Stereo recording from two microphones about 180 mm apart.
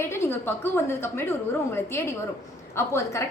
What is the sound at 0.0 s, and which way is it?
A woman's voice, 15° left (ahead or behind).